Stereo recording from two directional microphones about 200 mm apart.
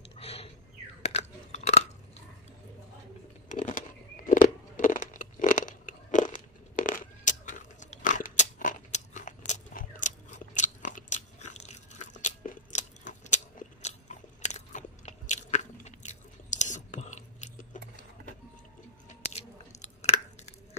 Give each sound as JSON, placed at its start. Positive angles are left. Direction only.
{"t": 0.2, "sound": "a sound", "side_deg": 30}
{"t": 1.0, "sound": "biting", "side_deg": 35}
{"t": 3.4, "sound": "a sound", "side_deg": 40}
{"t": 9.5, "sound": "biting", "side_deg": 40}
{"t": 12.2, "sound": "crunch", "side_deg": 35}
{"t": 19.3, "sound": "chewing", "side_deg": 35}